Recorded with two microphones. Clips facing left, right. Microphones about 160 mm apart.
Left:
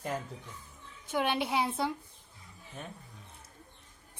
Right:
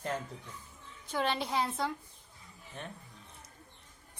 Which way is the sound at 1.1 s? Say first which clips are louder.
Left 2 dB; 10° left (ahead or behind).